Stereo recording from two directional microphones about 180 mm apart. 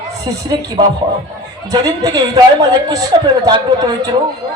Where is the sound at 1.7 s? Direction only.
20° right (ahead or behind).